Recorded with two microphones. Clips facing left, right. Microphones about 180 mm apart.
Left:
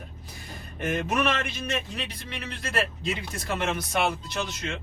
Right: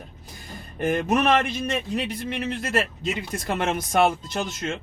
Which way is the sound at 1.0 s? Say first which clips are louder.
Right 4 dB; 45° right (ahead or behind).